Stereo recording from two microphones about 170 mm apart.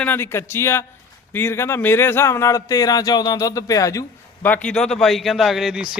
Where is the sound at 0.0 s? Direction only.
15° left (ahead or behind).